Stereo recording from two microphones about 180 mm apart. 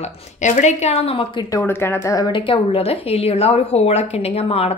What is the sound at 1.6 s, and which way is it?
A woman's voice, 10° left (ahead or behind).